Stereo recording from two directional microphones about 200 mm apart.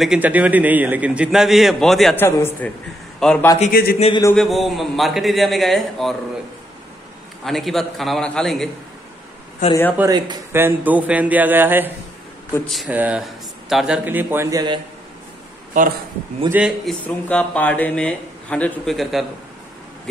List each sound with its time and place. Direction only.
0.0 s speech: 5° right (ahead or behind)
2.2 s a man's voice: 10° left (ahead or behind)
3.7 s speech: 50° left (ahead or behind)
4.4 s speech: centre (ahead or behind)
7.4 s speech: centre (ahead or behind)
9.6 s speech: 35° left (ahead or behind)
9.9 s a man's voice: 20° right (ahead or behind)
15.8 s a man's voice: 40° right (ahead or behind)
16.4 s speech: 5° right (ahead or behind)